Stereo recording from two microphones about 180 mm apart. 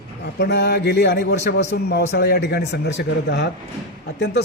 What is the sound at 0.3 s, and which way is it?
A man's voice, 65° left (ahead or behind).